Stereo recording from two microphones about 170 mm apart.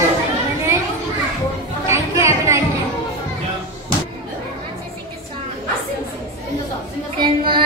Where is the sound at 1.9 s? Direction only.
15° right (ahead or behind).